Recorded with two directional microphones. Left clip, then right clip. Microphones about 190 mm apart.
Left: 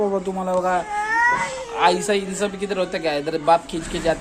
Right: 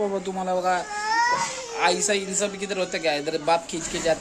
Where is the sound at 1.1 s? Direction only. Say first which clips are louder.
Left 3 dB; 25° right (ahead or behind).